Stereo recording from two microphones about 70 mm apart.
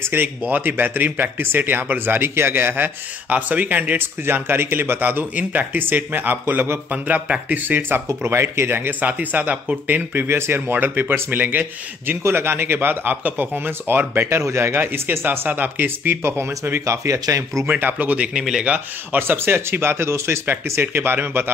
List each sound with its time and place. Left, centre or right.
0.0 s speech: right
16.8 s speech: right
17.6 s speech: right
18.4 s speech: centre
19.1 s speech: right